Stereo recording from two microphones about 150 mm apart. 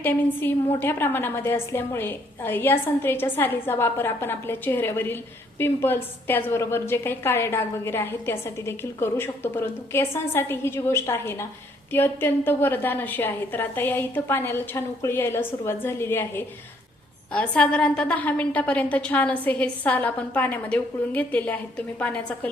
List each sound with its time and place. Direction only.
0.0 s a woman's voice: 15° left (ahead or behind)